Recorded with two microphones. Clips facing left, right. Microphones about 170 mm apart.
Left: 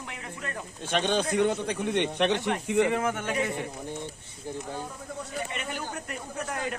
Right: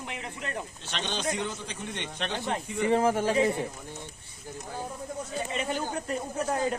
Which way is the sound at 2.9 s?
30° right (ahead or behind).